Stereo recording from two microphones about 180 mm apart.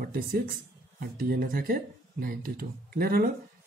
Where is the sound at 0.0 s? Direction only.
55° right (ahead or behind).